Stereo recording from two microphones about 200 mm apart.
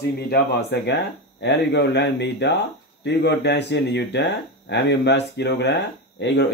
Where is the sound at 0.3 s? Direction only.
55° left (ahead or behind).